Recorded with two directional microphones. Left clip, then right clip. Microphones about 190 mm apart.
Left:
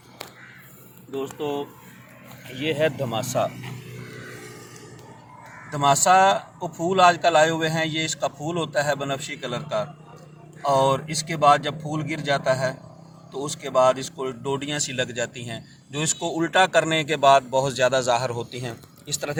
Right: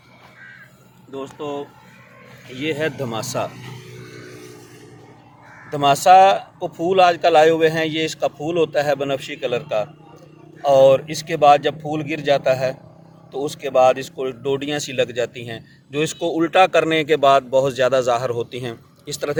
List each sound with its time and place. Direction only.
1.1 s speech: 15° right (ahead or behind)
2.5 s speech: 35° right (ahead or behind); by 4.1 s 50° right (ahead or behind)
5.7 s speech: 55° right (ahead or behind)